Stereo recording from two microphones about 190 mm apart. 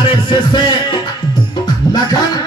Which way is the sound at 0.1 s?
25° left (ahead or behind).